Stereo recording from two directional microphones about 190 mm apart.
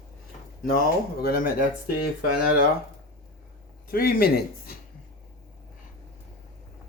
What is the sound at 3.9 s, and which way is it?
Speech, 50° left (ahead or behind).